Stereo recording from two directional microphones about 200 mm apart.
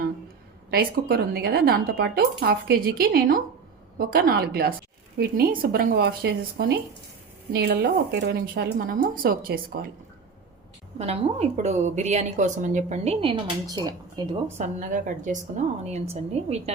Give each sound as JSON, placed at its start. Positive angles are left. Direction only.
{"t": 0.7, "sound": "speech", "side_deg": -50}
{"t": 10.9, "sound": "a woman's voice", "side_deg": -30}
{"t": 14.6, "sound": "a woman's voice", "side_deg": -40}